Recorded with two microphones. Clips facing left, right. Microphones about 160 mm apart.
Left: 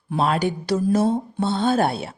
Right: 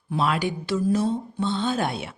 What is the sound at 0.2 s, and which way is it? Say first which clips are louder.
A woman's voice: left 3 dB; 40° left (ahead or behind).